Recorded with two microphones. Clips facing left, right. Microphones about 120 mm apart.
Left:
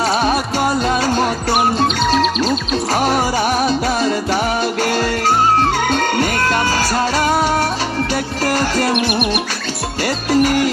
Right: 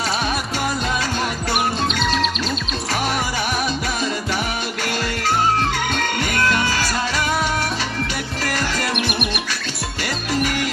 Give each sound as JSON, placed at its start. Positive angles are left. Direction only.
{"t": 0.1, "sound": "music", "side_deg": 40}
{"t": 2.9, "sound": "music", "side_deg": 35}
{"t": 9.0, "sound": "music", "side_deg": 0}
{"t": 10.0, "sound": "music", "side_deg": 40}